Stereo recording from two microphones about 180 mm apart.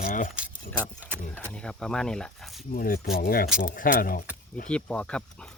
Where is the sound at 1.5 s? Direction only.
5° left (ahead or behind).